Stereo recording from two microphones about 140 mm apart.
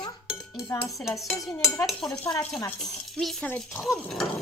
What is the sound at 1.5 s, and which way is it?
Speech, 20° left (ahead or behind).